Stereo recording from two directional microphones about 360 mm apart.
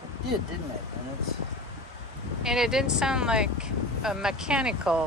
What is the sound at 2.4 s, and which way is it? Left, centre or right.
Speech, centre.